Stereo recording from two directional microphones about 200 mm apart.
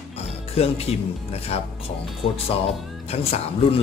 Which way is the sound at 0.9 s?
30° left (ahead or behind).